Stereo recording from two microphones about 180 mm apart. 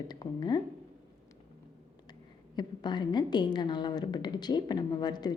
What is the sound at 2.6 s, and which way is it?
A woman's voice, 25° left (ahead or behind).